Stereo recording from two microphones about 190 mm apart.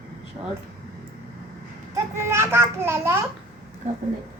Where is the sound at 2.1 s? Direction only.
15° right (ahead or behind).